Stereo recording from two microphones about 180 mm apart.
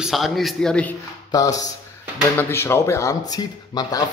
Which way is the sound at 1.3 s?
20° left (ahead or behind).